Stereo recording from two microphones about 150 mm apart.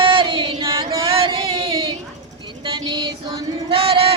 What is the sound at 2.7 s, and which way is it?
Child singing, 30° right (ahead or behind).